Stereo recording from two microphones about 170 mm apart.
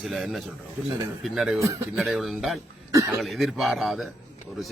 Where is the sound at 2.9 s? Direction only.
20° right (ahead or behind).